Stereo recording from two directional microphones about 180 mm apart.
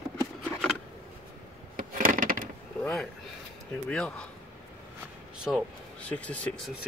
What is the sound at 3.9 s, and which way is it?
Speech, 5° left (ahead or behind).